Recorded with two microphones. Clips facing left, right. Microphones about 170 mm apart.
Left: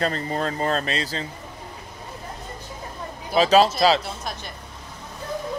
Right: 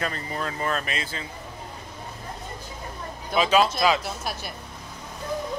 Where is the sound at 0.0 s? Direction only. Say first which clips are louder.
Left 5 dB; 35° left (ahead or behind).